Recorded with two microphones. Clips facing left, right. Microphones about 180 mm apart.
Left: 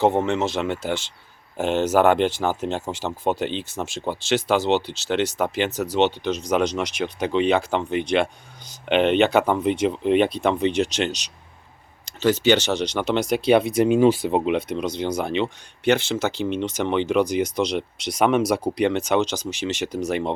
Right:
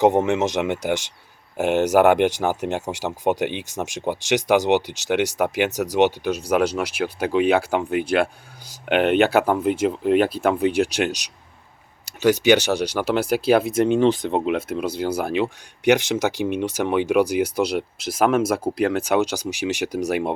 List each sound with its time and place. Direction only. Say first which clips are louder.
0.0 s speech: right 2 dB; 15° right (ahead or behind)